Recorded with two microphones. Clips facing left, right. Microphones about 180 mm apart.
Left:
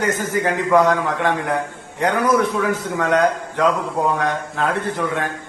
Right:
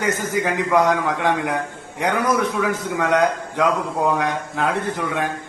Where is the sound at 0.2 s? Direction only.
15° right (ahead or behind).